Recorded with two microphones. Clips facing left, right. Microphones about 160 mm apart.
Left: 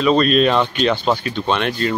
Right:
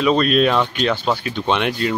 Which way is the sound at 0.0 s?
5° right (ahead or behind).